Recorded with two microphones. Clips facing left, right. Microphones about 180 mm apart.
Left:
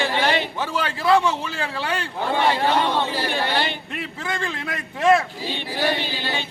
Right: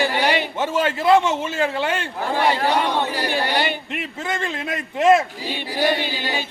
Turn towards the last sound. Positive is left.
turn(degrees=-10)  # may be behind; listen again after turning